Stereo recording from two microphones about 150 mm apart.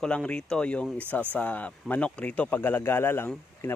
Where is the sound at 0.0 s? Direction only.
5° left (ahead or behind).